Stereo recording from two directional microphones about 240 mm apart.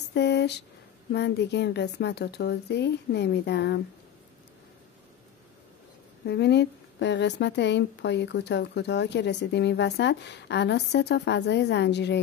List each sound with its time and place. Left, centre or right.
0.1 s speech: left
6.2 s speech: left